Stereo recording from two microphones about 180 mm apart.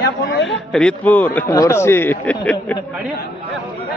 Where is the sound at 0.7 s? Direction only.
5° left (ahead or behind).